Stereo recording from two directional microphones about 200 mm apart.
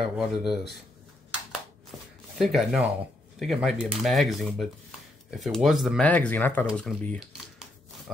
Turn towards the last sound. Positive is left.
turn(degrees=5)  # may be behind; listen again after turning